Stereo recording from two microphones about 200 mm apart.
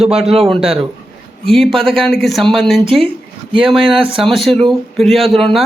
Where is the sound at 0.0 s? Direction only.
Centre (ahead or behind).